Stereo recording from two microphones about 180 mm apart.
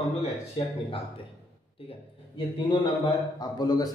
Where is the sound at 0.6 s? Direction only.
25° left (ahead or behind).